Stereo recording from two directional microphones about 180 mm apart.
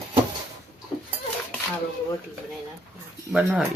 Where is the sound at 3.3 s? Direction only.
5° right (ahead or behind).